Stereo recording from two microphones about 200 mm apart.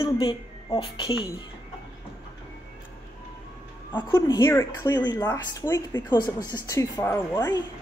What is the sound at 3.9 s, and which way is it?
Speech, 20° left (ahead or behind).